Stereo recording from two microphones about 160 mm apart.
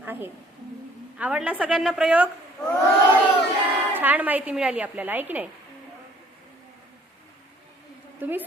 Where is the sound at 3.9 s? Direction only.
10° right (ahead or behind).